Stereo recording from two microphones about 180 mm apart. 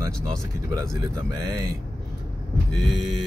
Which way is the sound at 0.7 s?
20° right (ahead or behind).